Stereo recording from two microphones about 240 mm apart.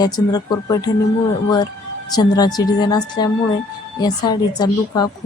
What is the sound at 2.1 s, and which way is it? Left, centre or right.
A woman's voice, centre.